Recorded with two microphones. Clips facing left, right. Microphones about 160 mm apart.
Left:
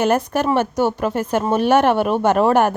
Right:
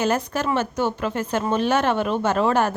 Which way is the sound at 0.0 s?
55° left (ahead or behind).